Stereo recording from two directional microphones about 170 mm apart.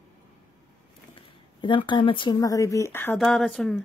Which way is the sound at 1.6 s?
30° left (ahead or behind).